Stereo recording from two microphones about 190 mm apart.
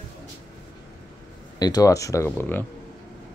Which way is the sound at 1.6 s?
20° left (ahead or behind).